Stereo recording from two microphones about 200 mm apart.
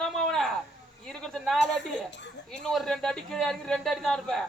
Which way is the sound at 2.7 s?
Centre (ahead or behind).